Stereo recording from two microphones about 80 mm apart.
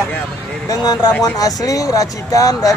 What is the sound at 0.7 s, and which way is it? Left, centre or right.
Speech, left.